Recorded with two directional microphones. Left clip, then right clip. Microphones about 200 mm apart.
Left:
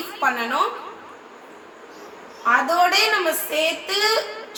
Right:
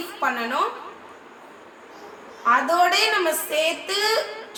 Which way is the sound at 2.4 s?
Centre (ahead or behind).